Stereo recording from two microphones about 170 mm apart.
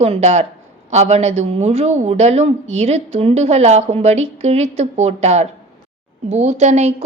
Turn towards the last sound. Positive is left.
turn(degrees=-40)  # may be behind; listen again after turning